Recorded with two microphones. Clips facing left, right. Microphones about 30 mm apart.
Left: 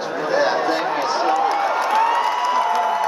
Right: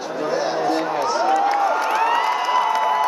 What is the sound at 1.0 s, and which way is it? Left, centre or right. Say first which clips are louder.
Speech: even; left.